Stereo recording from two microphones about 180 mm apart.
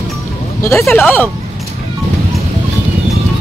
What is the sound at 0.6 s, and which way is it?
Speech, 15° left (ahead or behind).